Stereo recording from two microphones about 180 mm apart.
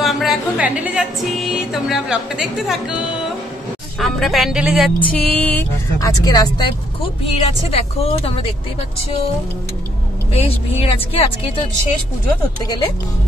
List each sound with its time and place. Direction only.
0.0 s music: centre (ahead or behind)
1.7 s speech: 5° right (ahead or behind)
4.0 s speech: centre (ahead or behind)
5.9 s speech: 20° left (ahead or behind)
7.3 s speech: 35° left (ahead or behind)
10.3 s speech: 35° left (ahead or behind)